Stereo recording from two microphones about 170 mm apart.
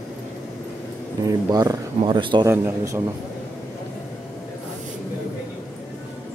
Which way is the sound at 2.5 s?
15° right (ahead or behind).